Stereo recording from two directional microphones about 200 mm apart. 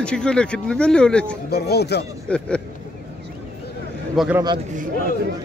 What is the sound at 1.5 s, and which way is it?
Speech, 55° left (ahead or behind).